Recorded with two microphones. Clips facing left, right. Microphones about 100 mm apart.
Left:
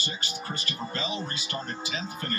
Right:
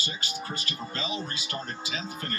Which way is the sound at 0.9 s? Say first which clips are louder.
Even; 35° left (ahead or behind).